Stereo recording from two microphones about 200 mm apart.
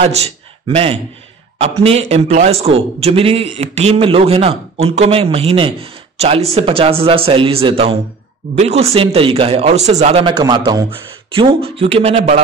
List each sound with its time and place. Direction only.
0.0 s a man's voice: 30° right (ahead or behind)